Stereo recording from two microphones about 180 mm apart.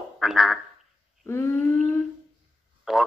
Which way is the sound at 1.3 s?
15° left (ahead or behind).